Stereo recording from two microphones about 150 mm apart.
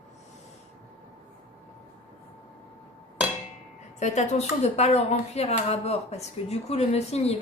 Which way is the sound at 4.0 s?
50° left (ahead or behind).